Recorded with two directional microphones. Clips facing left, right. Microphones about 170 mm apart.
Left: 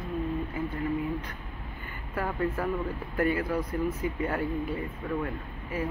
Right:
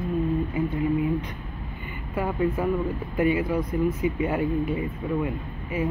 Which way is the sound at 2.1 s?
15° right (ahead or behind).